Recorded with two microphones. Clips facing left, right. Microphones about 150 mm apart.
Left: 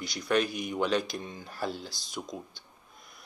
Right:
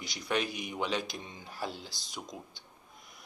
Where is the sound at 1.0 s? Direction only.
50° left (ahead or behind).